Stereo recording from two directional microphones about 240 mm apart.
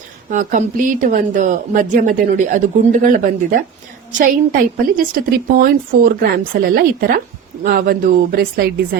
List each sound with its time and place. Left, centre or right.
0.3 s a woman's voice: right
4.2 s a woman's voice: right